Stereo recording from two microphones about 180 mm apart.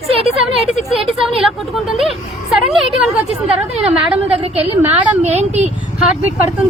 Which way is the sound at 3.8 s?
35° right (ahead or behind).